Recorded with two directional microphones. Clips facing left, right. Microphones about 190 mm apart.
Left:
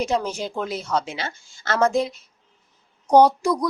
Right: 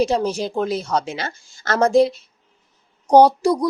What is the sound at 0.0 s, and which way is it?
A woman's voice, 35° right (ahead or behind).